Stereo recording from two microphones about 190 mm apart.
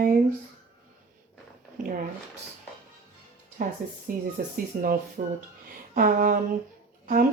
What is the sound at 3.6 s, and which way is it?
Speech, 50° right (ahead or behind).